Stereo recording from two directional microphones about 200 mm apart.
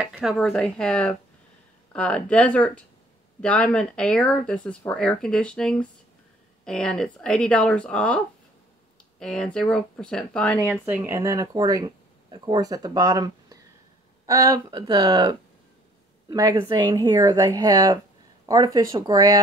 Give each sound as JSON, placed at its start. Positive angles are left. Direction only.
{"t": 0.0, "sound": "speech", "side_deg": -5}
{"t": 9.2, "sound": "speech", "side_deg": 5}
{"t": 10.7, "sound": "speech", "side_deg": -10}